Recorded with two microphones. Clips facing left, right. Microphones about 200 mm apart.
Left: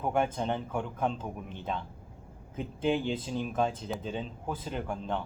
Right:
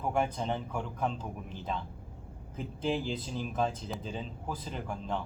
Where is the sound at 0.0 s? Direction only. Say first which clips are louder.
Left 2 dB; centre (ahead or behind).